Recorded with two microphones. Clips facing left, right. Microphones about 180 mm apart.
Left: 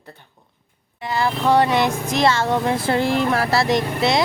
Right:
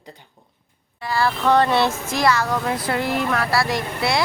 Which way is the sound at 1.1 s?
15° left (ahead or behind).